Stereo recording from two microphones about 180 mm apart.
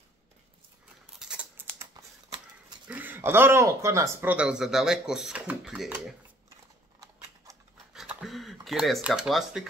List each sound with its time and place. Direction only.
1.2 s scissors: 5° right (ahead or behind)
2.0 s typewriter: 20° right (ahead or behind)
2.9 s speech: 10° right (ahead or behind)
7.5 s rub: 15° right (ahead or behind)
7.9 s a sound: 5° right (ahead or behind)